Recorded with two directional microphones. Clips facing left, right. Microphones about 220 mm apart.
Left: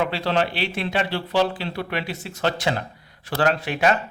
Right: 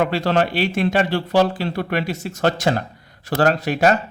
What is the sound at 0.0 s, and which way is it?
Speech, 45° right (ahead or behind).